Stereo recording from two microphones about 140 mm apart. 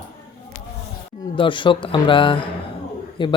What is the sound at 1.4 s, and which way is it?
Speech, 35° left (ahead or behind).